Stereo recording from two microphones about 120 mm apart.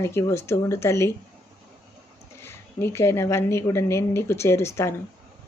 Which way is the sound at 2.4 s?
20° left (ahead or behind).